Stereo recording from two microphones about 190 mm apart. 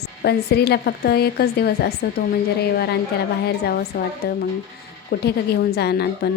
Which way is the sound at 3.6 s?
55° left (ahead or behind).